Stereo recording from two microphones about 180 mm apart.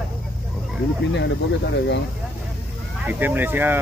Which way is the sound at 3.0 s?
10° right (ahead or behind).